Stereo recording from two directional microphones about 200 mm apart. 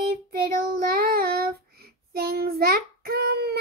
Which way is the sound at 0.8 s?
50° right (ahead or behind).